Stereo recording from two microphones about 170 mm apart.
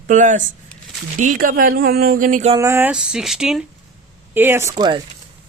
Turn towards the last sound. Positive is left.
turn(degrees=-25)  # may be behind; listen again after turning